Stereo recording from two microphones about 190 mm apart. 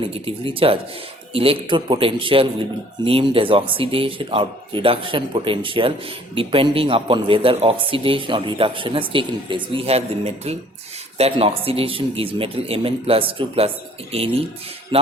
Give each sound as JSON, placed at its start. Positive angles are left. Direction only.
{"t": 0.0, "sound": "speech", "side_deg": -30}